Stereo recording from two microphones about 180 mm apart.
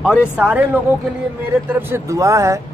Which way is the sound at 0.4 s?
5° right (ahead or behind).